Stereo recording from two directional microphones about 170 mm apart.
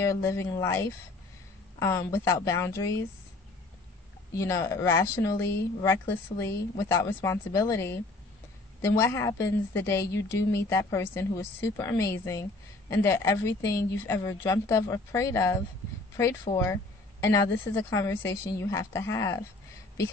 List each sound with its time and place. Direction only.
0.0 s a woman's voice: 15° left (ahead or behind)
4.4 s a woman's voice: 15° left (ahead or behind)
9.0 s a woman's voice: 15° left (ahead or behind)